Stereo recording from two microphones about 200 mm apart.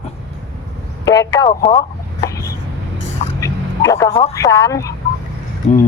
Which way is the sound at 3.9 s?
15° left (ahead or behind).